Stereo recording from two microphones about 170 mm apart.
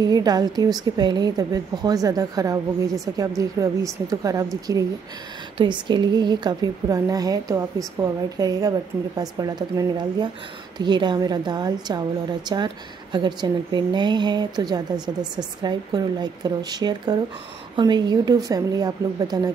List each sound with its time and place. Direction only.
0.0 s a woman's voice: 25° right (ahead or behind)